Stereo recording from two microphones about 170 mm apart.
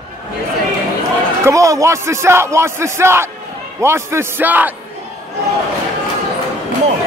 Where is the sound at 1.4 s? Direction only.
20° right (ahead or behind).